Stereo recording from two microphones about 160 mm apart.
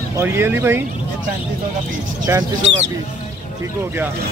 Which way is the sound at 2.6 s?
45° right (ahead or behind).